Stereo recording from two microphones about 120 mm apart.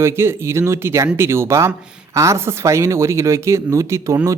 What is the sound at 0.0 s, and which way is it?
Speech, 20° right (ahead or behind).